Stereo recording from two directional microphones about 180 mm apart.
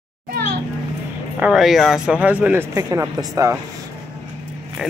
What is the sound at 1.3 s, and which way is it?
Speech, 5° right (ahead or behind).